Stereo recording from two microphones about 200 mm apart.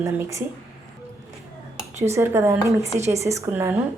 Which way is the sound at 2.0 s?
15° right (ahead or behind).